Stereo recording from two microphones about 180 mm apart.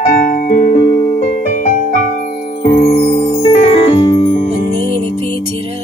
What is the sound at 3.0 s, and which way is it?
Music, 35° left (ahead or behind).